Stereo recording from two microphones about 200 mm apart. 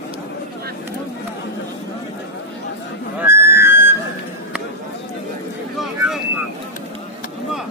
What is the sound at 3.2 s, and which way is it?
Music, 10° right (ahead or behind).